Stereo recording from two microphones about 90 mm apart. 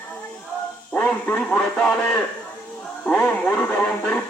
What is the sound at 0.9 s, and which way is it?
Speech, 15° left (ahead or behind).